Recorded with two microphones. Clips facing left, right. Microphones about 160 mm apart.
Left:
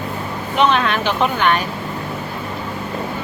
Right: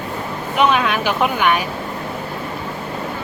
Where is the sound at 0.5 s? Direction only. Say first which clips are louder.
Even; 5° right (ahead or behind).